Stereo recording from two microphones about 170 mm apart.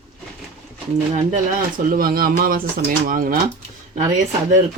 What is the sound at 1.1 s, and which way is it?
Speech, 50° right (ahead or behind).